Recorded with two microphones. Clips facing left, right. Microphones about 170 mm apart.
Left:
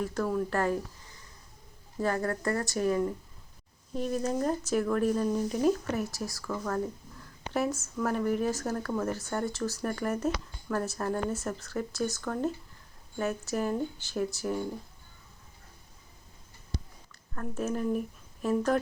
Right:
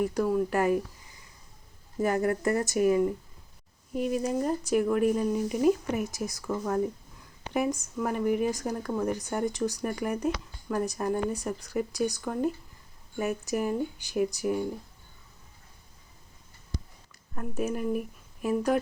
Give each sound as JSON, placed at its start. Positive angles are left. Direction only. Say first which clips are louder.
{"t": 0.0, "sound": "speech", "louder": "right 4 dB", "side_deg": -15}
{"t": 2.0, "sound": "speech", "louder": "right 4 dB", "side_deg": -15}
{"t": 17.3, "sound": "speech", "louder": "right 1 dB", "side_deg": -15}